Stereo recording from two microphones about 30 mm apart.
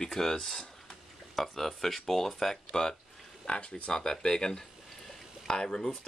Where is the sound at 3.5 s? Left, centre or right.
Left.